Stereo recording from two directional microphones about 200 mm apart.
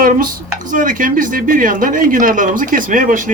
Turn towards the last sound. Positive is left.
turn(degrees=-40)  # may be behind; listen again after turning